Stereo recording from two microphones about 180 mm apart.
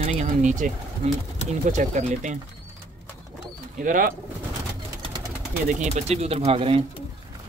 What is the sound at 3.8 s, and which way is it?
Speech, 50° right (ahead or behind).